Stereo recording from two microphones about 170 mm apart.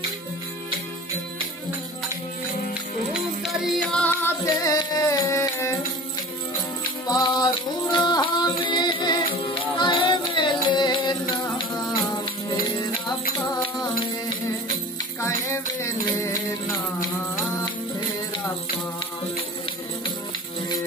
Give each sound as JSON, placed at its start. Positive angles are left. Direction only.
{"t": 3.1, "sound": "music", "side_deg": 0}
{"t": 7.1, "sound": "music", "side_deg": 25}
{"t": 15.1, "sound": "music", "side_deg": 15}